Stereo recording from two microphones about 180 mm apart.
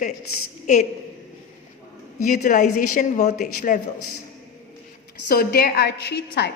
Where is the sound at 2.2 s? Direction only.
45° left (ahead or behind).